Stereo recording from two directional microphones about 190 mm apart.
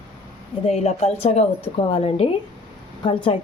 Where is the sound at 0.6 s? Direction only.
35° left (ahead or behind).